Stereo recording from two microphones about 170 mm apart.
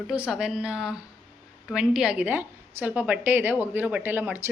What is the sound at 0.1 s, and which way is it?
A woman's voice, 5° right (ahead or behind).